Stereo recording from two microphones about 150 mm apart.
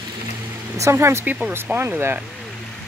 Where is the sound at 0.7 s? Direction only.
20° right (ahead or behind).